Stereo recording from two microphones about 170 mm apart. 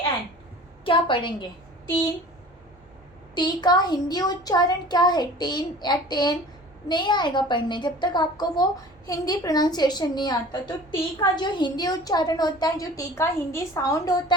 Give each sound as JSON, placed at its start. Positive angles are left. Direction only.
{"t": 0.9, "sound": "a woman's voice", "side_deg": 30}
{"t": 3.3, "sound": "a woman's voice", "side_deg": 25}